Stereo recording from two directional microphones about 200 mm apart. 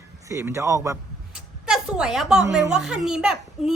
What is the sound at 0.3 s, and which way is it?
Speech, 15° right (ahead or behind).